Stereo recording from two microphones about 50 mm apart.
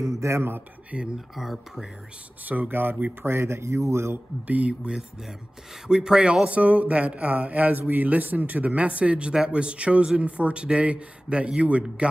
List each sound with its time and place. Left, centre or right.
0.0 s a sound: right
0.9 s speech: centre
1.3 s speech: centre
2.7 s speech: right
4.5 s speech: right
5.9 s speech: centre